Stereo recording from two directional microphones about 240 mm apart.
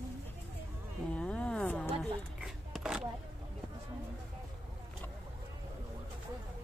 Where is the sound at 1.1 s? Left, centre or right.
Centre.